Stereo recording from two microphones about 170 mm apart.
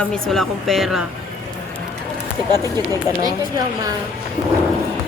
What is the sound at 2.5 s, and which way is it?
Speech, 20° right (ahead or behind).